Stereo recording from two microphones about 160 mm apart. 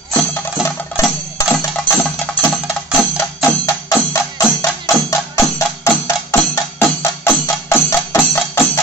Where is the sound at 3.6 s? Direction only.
20° left (ahead or behind).